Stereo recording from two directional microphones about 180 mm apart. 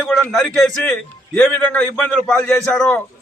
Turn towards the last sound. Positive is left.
turn(degrees=10)  # may be behind; listen again after turning